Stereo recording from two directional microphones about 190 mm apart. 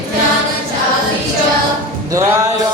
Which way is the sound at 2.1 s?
15° right (ahead or behind).